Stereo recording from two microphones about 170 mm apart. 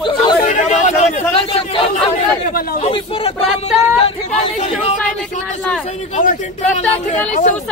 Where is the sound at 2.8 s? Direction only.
35° left (ahead or behind).